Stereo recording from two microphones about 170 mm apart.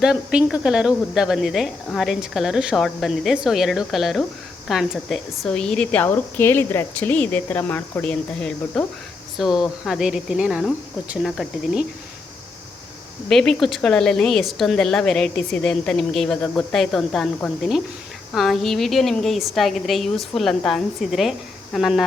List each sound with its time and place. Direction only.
0.0 s a woman's voice: 5° right (ahead or behind)
13.2 s speech: 5° left (ahead or behind)